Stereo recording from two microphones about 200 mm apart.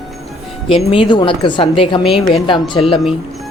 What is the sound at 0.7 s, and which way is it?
A woman's voice, 25° left (ahead or behind).